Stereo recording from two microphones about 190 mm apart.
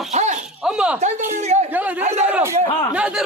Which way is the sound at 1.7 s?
10° right (ahead or behind).